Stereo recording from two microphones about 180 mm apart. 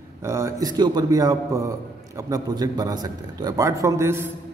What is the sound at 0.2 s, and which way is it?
A man's voice, 15° right (ahead or behind).